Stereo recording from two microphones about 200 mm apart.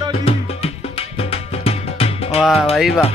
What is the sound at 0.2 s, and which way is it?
Music, 30° left (ahead or behind).